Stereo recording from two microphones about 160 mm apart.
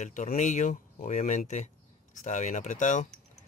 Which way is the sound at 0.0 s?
50° left (ahead or behind).